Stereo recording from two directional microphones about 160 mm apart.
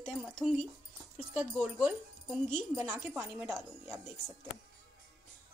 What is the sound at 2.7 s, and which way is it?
Speech, 15° right (ahead or behind).